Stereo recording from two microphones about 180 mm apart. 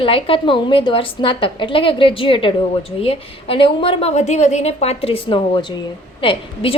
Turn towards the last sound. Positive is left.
turn(degrees=30)  # may be behind; listen again after turning